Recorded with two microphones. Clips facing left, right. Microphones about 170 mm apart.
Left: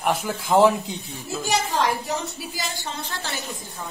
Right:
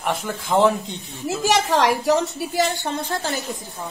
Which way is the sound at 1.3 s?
85° right.